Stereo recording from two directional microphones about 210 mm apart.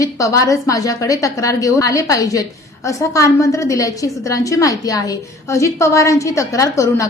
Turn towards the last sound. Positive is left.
turn(degrees=15)  # may be behind; listen again after turning